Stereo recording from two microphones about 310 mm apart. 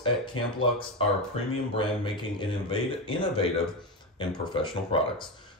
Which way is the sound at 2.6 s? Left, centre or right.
Centre.